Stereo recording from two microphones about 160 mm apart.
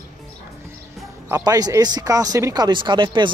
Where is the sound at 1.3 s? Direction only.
20° right (ahead or behind).